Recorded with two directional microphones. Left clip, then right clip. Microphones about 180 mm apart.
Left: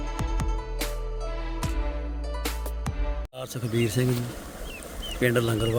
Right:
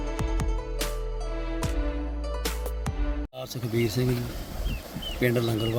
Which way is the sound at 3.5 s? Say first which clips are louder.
Left 1 dB; 20° left (ahead or behind).